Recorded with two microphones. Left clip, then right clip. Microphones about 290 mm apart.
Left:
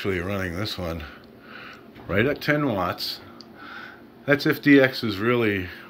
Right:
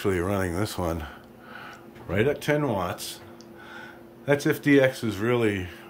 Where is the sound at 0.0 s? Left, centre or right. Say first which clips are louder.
Right 1 dB; centre.